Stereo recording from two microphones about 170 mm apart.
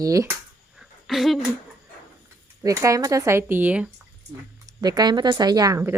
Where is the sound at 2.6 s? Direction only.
20° right (ahead or behind).